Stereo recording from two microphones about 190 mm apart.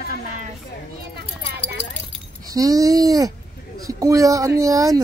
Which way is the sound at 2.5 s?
20° right (ahead or behind).